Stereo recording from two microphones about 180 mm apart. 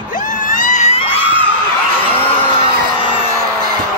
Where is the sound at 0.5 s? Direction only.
45° left (ahead or behind).